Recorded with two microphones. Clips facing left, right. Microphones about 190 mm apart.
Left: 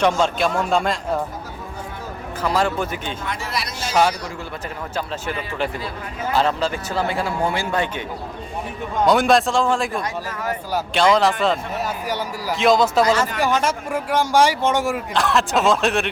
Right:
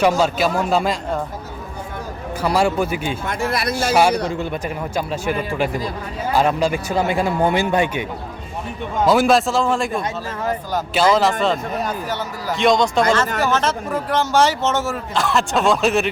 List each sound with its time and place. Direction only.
0.2 s speech: 5° right (ahead or behind)
2.4 s speech: 10° right (ahead or behind)
3.2 s speech: 50° right (ahead or behind)
4.9 s speech: 10° right (ahead or behind)
9.0 s speech: centre (ahead or behind); by 15.0 s 15° left (ahead or behind)
15.1 s speech: centre (ahead or behind)